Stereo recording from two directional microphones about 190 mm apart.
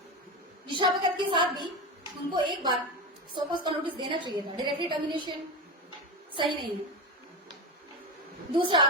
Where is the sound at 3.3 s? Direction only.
25° right (ahead or behind).